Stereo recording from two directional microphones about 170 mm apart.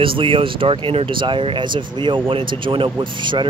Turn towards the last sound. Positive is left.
turn(degrees=-30)  # may be behind; listen again after turning